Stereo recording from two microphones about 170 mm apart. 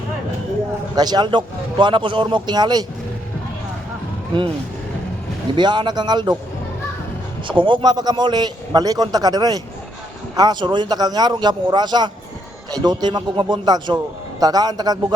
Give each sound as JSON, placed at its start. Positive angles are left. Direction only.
{"t": 0.9, "sound": "a man's voice", "side_deg": -25}
{"t": 5.5, "sound": "a man's voice", "side_deg": -25}
{"t": 7.4, "sound": "a man's voice", "side_deg": -30}